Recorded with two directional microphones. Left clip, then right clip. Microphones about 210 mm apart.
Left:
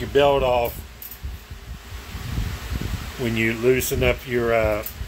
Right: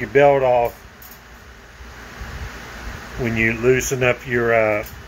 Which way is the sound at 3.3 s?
15° left (ahead or behind).